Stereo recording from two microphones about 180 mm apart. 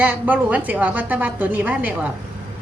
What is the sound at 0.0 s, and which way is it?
A woman's voice, 10° right (ahead or behind).